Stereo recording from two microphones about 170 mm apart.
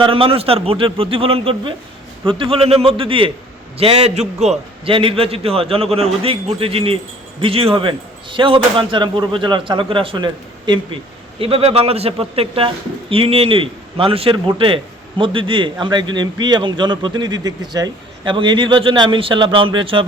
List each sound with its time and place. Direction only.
0.0 s a man's voice: 30° right (ahead or behind)